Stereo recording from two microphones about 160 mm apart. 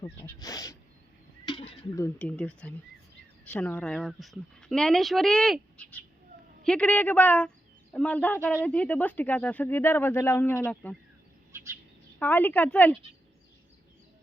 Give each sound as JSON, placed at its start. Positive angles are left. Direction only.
{"t": 0.0, "sound": "speech", "side_deg": 20}
{"t": 1.5, "sound": "a sound", "side_deg": 35}
{"t": 2.0, "sound": "speech", "side_deg": 10}
{"t": 11.5, "sound": "bird", "side_deg": -15}
{"t": 12.2, "sound": "speech", "side_deg": 10}